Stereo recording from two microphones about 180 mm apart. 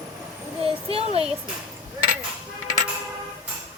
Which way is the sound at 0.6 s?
30° right (ahead or behind).